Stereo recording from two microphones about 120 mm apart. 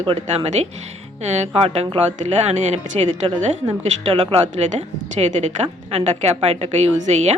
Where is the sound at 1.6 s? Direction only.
60° right (ahead or behind).